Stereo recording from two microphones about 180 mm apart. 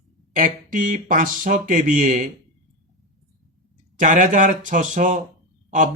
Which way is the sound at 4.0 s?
45° right (ahead or behind).